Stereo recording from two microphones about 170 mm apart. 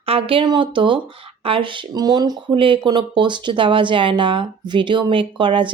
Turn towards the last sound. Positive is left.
turn(degrees=-30)  # may be behind; listen again after turning